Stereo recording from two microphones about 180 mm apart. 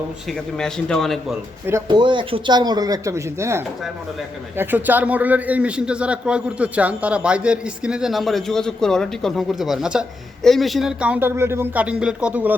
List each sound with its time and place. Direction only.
0.3 s a man's voice: 5° left (ahead or behind)
1.9 s a man's voice: 25° right (ahead or behind); by 12.5 s 10° right (ahead or behind)